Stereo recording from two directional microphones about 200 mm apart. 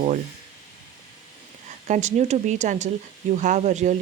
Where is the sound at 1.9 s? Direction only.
35° right (ahead or behind).